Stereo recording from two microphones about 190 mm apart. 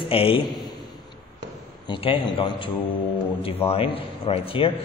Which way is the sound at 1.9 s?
25° left (ahead or behind).